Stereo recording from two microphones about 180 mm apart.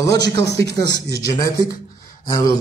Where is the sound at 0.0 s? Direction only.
70° right (ahead or behind).